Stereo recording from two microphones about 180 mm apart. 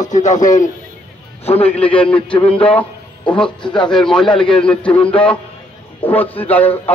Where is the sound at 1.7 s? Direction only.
5° left (ahead or behind).